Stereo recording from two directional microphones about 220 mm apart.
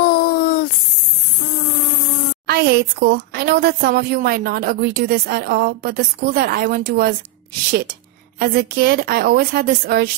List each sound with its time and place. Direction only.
0.0 s a sound: 45° left (ahead or behind)
2.4 s speech: 45° right (ahead or behind)
8.4 s speech: 45° right (ahead or behind)